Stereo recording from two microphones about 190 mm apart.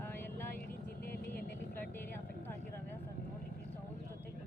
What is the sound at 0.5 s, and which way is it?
Vehicle, 50° left (ahead or behind).